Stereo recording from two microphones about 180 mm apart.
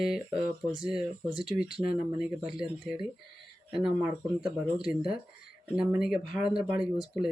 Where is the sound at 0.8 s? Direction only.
5° right (ahead or behind).